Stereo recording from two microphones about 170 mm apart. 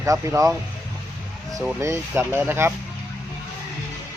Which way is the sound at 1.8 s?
15° right (ahead or behind).